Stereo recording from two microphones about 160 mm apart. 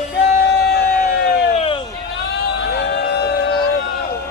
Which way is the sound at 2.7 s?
90° left.